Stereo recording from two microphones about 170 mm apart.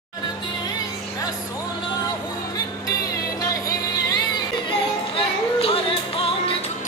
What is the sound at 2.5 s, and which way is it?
Music, 20° left (ahead or behind).